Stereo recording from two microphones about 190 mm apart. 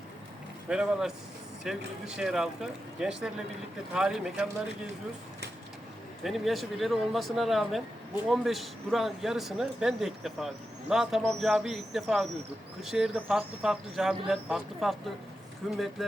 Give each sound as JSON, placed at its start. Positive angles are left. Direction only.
{"t": 0.7, "sound": "speech", "side_deg": -5}
{"t": 6.2, "sound": "speech", "side_deg": 0}